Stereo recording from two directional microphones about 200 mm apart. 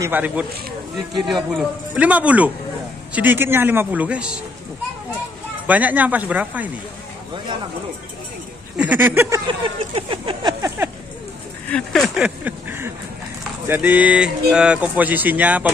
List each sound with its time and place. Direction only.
0.0 s speech: 10° right (ahead or behind)
5.7 s speech: 10° right (ahead or behind)
8.7 s speech: 10° right (ahead or behind)
9.5 s a sound: 25° right (ahead or behind)
10.8 s a sound: 10° right (ahead or behind)
11.7 s speech: centre (ahead or behind)